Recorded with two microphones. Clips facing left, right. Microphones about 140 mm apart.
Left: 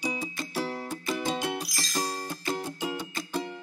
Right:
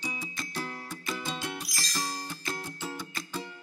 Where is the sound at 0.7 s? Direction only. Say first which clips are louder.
Left 5 dB; 25° left (ahead or behind).